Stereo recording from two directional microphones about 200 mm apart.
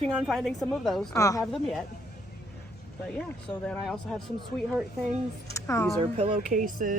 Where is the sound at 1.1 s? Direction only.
15° left (ahead or behind).